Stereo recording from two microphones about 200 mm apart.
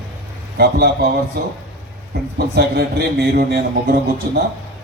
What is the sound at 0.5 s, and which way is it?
A man's voice, 55° right (ahead or behind).